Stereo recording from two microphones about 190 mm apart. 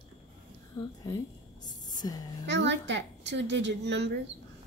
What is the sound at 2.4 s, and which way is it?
A woman's voice, 70° right (ahead or behind).